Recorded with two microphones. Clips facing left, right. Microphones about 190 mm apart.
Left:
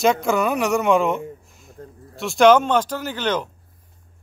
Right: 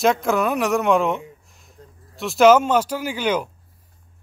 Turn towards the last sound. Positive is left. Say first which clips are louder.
# right 1 dB
turn(degrees=-10)  # may be behind; listen again after turning